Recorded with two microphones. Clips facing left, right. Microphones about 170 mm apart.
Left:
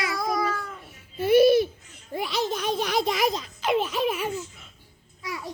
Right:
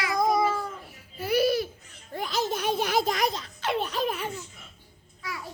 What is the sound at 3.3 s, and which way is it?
Baby laughter, 10° left (ahead or behind).